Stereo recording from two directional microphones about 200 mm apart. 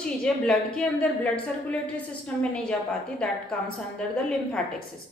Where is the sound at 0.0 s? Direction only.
5° left (ahead or behind).